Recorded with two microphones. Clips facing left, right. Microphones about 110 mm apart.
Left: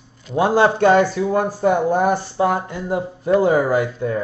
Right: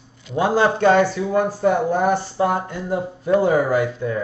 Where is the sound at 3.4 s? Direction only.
35° left (ahead or behind).